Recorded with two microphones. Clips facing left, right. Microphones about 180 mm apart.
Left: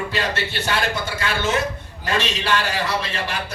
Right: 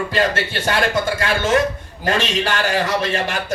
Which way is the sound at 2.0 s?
50° right (ahead or behind).